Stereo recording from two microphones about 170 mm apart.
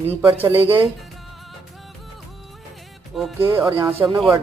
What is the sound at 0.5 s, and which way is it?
Speech, 35° right (ahead or behind).